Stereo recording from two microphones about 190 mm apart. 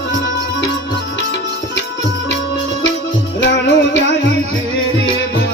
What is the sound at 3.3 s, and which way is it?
Music, 70° left (ahead or behind).